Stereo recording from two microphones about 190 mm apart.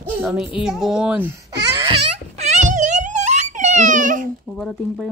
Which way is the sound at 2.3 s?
40° right (ahead or behind).